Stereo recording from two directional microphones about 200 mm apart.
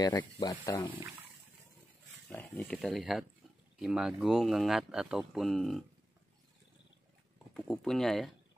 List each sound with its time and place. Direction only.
0.0 s speech: 20° left (ahead or behind)
2.2 s speech: 10° left (ahead or behind)
7.5 s speech: 5° left (ahead or behind)